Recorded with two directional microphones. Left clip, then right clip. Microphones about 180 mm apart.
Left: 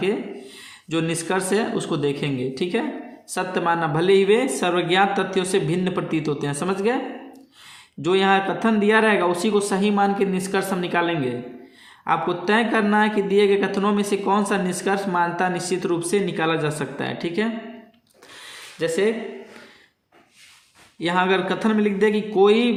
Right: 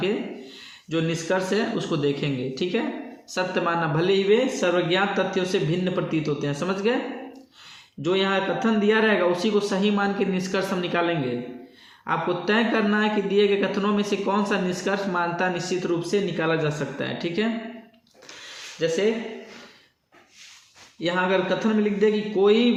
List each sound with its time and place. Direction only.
0.0 s speech: 35° left (ahead or behind)
8.0 s speech: 40° left (ahead or behind)
18.8 s speech: 35° left (ahead or behind)
21.0 s speech: 40° left (ahead or behind)